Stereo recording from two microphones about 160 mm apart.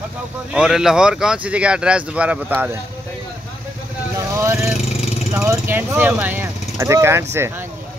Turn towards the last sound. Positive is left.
turn(degrees=-15)  # may be behind; listen again after turning